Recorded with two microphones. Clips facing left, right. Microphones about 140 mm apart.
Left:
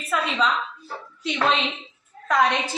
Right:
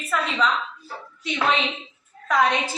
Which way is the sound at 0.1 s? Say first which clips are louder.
Even; 15° left (ahead or behind).